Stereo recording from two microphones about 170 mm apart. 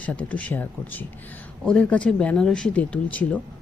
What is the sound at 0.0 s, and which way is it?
Speech, 10° left (ahead or behind).